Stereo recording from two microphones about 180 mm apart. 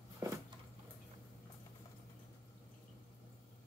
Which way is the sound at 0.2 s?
20° right (ahead or behind).